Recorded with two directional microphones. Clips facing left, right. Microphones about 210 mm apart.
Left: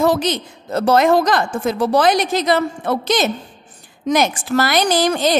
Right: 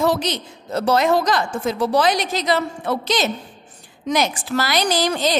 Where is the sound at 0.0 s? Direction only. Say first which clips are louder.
Left 3 dB; 50° left (ahead or behind).